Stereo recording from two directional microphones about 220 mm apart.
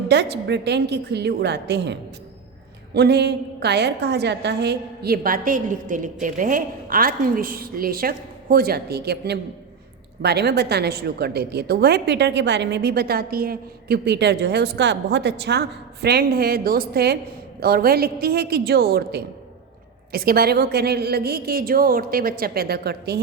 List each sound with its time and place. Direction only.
0.1 s a woman's voice: 50° right (ahead or behind)